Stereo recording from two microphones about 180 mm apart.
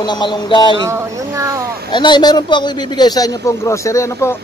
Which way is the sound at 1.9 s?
25° left (ahead or behind).